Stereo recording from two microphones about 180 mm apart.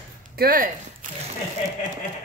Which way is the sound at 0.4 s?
50° right (ahead or behind).